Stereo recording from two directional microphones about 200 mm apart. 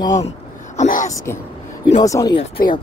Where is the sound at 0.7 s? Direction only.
40° left (ahead or behind).